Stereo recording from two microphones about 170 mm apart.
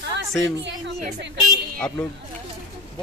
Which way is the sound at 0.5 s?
90° right.